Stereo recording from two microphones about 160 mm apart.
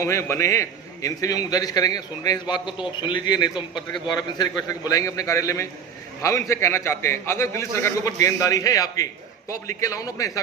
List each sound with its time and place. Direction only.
0.0 s a man's voice: 15° left (ahead or behind)